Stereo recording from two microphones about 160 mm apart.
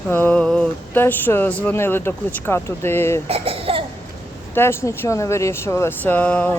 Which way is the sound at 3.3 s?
35° right (ahead or behind).